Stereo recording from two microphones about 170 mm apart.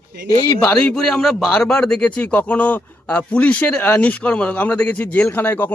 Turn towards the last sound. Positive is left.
turn(degrees=10)  # may be behind; listen again after turning